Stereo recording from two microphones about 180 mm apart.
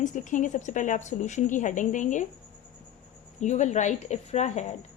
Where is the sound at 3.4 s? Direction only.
40° left (ahead or behind).